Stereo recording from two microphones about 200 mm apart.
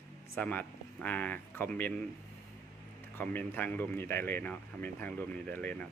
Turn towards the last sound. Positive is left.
turn(degrees=5)  # may be behind; listen again after turning